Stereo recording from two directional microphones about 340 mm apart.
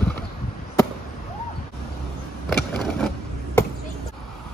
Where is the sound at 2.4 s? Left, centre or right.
Centre.